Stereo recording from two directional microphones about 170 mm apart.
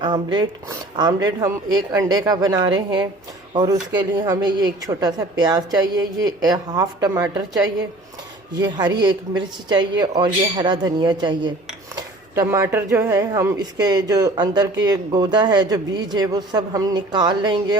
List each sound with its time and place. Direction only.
0.0 s speech: 25° right (ahead or behind)